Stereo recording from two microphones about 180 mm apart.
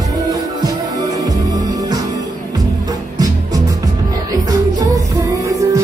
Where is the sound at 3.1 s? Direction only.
20° right (ahead or behind).